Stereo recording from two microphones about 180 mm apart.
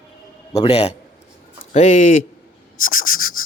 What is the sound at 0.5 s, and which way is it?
A man's voice, 35° left (ahead or behind).